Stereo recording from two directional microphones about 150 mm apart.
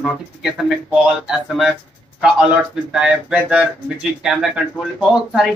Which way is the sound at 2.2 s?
5° right (ahead or behind).